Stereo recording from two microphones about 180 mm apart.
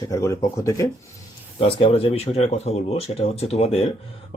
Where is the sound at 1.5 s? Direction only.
30° left (ahead or behind).